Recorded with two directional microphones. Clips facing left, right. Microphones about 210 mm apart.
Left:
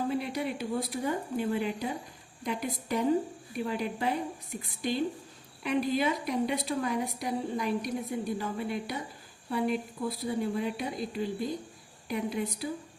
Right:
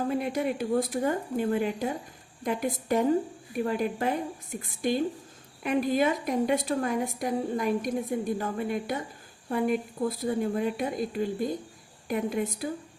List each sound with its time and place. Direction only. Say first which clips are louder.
0.1 s a woman's voice: right 4 dB; 50° right (ahead or behind)